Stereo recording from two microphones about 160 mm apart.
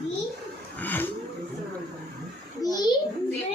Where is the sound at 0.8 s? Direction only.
10° left (ahead or behind).